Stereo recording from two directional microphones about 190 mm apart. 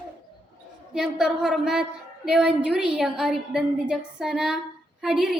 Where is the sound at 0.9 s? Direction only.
Centre (ahead or behind).